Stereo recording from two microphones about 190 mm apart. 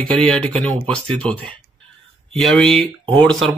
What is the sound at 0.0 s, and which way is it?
Speech, 5° left (ahead or behind).